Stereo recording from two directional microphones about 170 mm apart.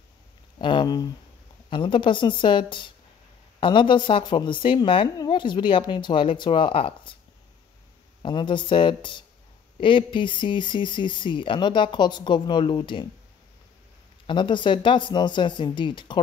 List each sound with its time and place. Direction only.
0.6 s a woman's voice: 30° left (ahead or behind)
8.2 s a woman's voice: 30° left (ahead or behind)
14.2 s a woman's voice: 30° left (ahead or behind)